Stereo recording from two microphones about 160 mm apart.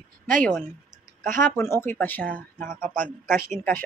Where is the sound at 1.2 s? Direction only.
55° right (ahead or behind).